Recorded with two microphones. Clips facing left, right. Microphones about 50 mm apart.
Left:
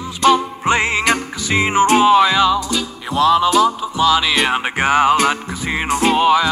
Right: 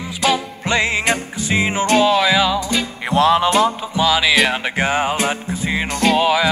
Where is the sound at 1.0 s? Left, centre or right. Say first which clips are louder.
Left 2 dB; left.